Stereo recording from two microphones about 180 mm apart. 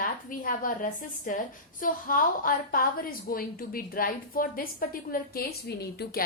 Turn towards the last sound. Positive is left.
turn(degrees=65)  # may be behind; listen again after turning